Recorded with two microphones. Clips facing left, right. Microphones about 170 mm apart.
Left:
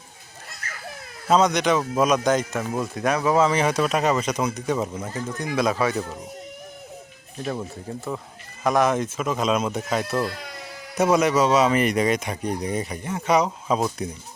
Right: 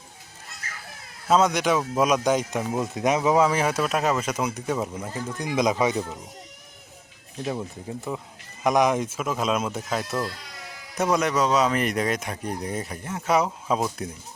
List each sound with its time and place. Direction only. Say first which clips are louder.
1.3 s speech: left 1 dB; 5° right (ahead or behind)
7.9 s speech: left 1 dB; 15° right (ahead or behind); by 14.2 s centre (ahead or behind)